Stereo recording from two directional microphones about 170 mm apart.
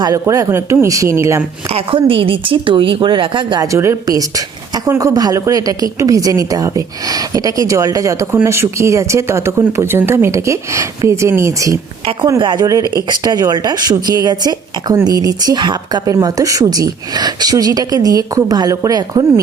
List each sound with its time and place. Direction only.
0.0 s speech: 20° right (ahead or behind)
1.7 s a woman's voice: 30° right (ahead or behind)